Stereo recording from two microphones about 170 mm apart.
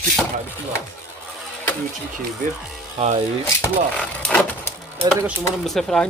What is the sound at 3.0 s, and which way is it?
Speech, 35° right (ahead or behind).